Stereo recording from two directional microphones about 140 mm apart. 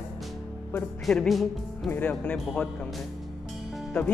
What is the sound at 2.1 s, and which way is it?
Speech, 5° left (ahead or behind).